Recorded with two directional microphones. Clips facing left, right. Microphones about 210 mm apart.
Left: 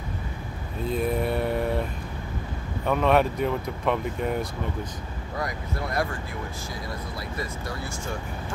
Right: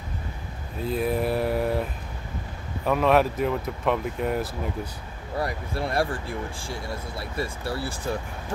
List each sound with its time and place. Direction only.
0.8 s a sound: centre (ahead or behind)
2.8 s speech: centre (ahead or behind)
5.4 s speech: 30° right (ahead or behind)